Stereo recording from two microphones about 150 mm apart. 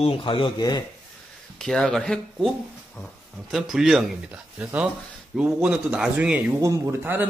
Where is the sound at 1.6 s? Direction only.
5° left (ahead or behind).